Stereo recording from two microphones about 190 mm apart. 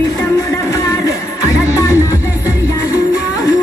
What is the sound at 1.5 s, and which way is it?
Music, 15° left (ahead or behind).